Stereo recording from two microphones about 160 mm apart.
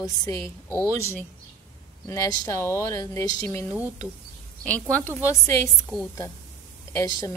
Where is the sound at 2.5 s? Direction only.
15° left (ahead or behind).